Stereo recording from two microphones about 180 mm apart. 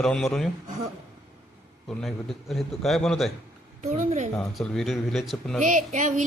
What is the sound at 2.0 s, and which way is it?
A man's voice, centre (ahead or behind).